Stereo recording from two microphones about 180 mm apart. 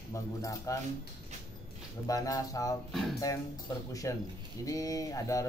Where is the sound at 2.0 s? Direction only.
20° left (ahead or behind).